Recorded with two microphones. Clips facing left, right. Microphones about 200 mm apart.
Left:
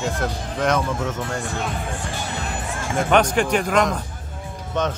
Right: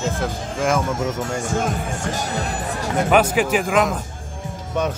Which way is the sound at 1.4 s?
45° right (ahead or behind).